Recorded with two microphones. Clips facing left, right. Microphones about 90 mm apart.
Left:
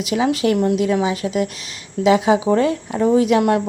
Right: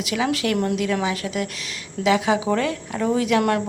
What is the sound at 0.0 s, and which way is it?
A woman's voice, 25° left (ahead or behind).